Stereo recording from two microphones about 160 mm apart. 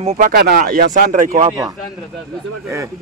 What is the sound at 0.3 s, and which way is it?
Speech, 70° right (ahead or behind).